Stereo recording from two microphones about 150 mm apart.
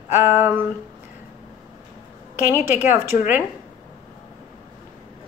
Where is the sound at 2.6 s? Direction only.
15° right (ahead or behind).